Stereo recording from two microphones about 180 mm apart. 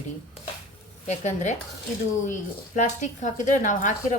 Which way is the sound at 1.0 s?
40° left (ahead or behind).